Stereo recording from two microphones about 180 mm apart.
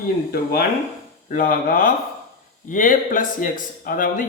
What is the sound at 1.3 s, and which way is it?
Speech, 50° left (ahead or behind).